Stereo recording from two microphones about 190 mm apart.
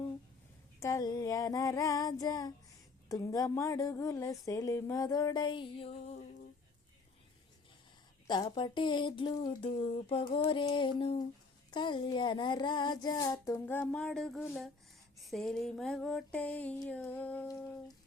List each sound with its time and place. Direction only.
0.8 s speech: 15° left (ahead or behind)
8.3 s speech: 25° left (ahead or behind); by 14.7 s centre (ahead or behind)
15.2 s a sound: centre (ahead or behind)